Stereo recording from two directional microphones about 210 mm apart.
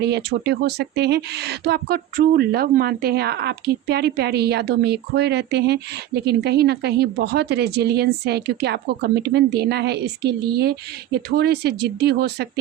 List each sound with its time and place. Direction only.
0.0 s speech: 50° right (ahead or behind)